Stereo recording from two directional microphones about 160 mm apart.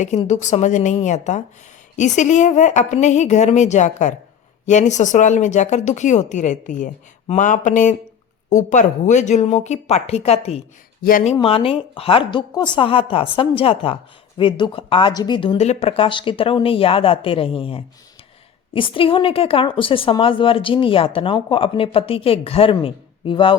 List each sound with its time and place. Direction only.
0.0 s speech: 45° left (ahead or behind)
11.0 s speech: 65° left (ahead or behind)
11.3 s a woman's voice: 35° left (ahead or behind)